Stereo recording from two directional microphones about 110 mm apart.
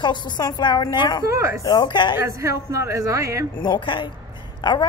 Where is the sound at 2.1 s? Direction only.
25° right (ahead or behind).